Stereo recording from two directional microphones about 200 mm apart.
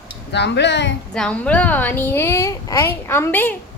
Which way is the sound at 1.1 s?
5° left (ahead or behind).